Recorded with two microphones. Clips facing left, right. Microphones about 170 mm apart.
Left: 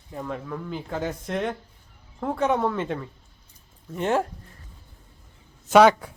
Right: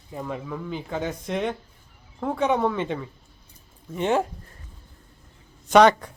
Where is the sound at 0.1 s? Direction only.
5° right (ahead or behind).